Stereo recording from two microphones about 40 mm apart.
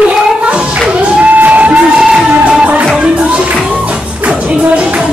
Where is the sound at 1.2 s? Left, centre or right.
Right.